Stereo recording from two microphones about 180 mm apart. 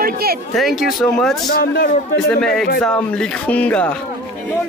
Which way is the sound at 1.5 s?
55° left (ahead or behind).